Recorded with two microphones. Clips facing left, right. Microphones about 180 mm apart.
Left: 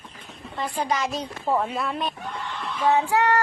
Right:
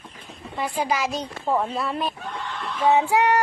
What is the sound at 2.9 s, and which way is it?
Speech, 15° right (ahead or behind).